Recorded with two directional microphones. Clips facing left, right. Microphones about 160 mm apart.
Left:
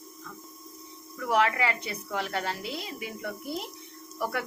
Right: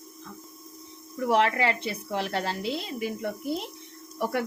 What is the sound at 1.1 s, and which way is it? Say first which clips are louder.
A woman's voice: right 2 dB; 30° right (ahead or behind).